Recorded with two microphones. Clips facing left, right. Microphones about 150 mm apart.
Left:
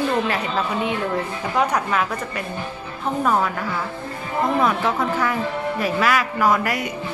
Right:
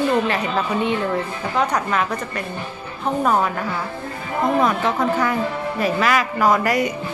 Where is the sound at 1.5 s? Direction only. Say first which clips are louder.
Even; 5° left (ahead or behind).